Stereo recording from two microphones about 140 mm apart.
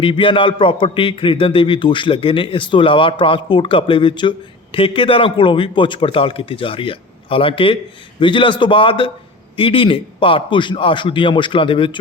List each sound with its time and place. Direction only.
0.0 s a man's voice: 40° left (ahead or behind)